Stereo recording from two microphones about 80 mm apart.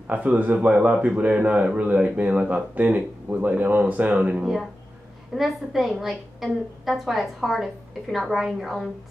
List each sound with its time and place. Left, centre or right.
0.0 s speech: centre
5.3 s a woman's voice: centre